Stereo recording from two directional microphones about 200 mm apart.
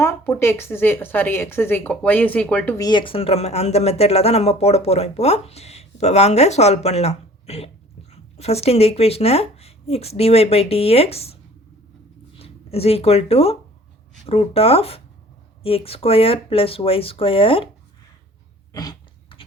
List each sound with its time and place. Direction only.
0.0 s a woman's voice: 10° left (ahead or behind); by 11.3 s 30° left (ahead or behind)
12.4 s speech: 30° left (ahead or behind)
18.7 s a sound: 20° left (ahead or behind)